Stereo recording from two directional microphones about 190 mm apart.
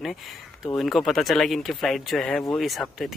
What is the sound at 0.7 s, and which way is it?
Speech, centre (ahead or behind).